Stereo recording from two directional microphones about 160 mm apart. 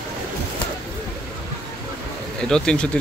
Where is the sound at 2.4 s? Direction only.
5° left (ahead or behind).